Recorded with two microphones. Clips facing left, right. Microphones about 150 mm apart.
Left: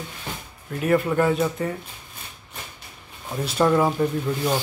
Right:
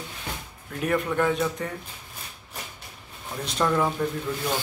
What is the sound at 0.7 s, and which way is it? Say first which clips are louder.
Speech: left 4 dB; 5° left (ahead or behind).